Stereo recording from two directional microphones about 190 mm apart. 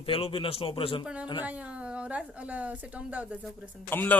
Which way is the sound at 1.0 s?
5° right (ahead or behind).